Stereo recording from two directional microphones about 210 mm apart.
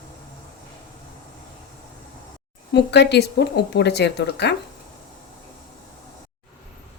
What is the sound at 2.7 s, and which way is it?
Speech, 55° left (ahead or behind).